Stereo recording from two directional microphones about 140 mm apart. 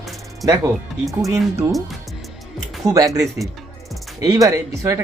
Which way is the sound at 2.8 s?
25° right (ahead or behind).